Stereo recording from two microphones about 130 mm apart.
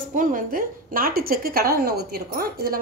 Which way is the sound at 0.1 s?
90° right.